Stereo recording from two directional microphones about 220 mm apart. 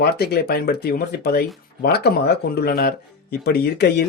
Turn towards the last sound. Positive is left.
turn(degrees=50)  # may be behind; listen again after turning